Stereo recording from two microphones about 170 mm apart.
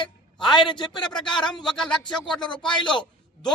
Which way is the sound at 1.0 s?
5° left (ahead or behind).